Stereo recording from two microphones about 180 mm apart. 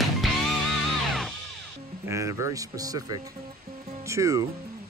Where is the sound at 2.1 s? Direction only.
15° right (ahead or behind).